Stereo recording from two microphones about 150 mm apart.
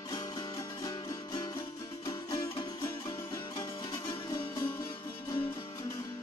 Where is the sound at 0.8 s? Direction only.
25° left (ahead or behind).